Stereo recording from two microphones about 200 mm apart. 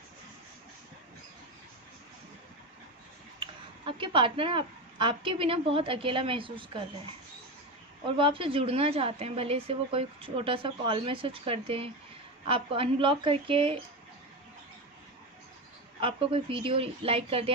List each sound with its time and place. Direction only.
3.3 s speech: 25° right (ahead or behind)
8.0 s a woman's voice: 25° right (ahead or behind)
16.0 s a woman's voice: 25° right (ahead or behind)